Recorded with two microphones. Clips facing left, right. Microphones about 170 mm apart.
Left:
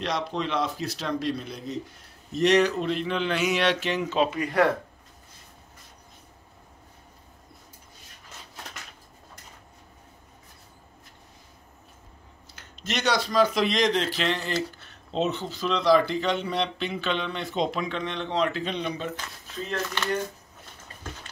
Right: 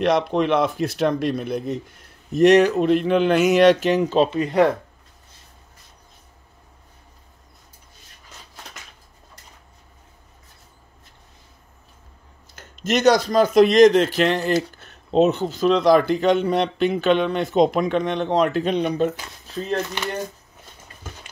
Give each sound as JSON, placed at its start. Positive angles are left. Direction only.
{"t": 0.0, "sound": "speech", "side_deg": -55}
{"t": 12.5, "sound": "speech", "side_deg": -45}
{"t": 19.4, "sound": "speech", "side_deg": -35}
{"t": 19.9, "sound": "speech", "side_deg": -15}